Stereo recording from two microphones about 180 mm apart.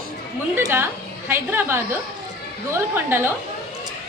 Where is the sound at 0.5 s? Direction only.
15° right (ahead or behind).